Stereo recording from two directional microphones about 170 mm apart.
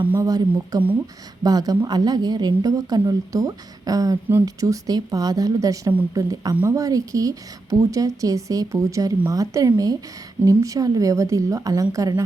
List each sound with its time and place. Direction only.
0.1 s a woman's voice: 20° right (ahead or behind)
5.9 s a woman's voice: 10° right (ahead or behind)